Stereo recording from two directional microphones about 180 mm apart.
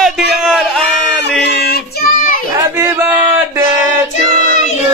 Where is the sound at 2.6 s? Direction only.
15° right (ahead or behind).